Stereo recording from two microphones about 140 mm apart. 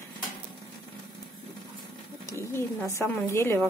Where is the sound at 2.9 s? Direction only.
20° left (ahead or behind).